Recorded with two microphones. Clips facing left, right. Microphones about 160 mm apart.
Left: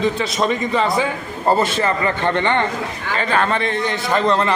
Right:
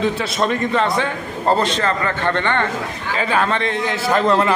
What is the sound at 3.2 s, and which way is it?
A man's voice, 5° right (ahead or behind).